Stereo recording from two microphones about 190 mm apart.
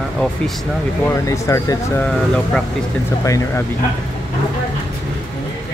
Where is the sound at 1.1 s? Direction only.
15° left (ahead or behind).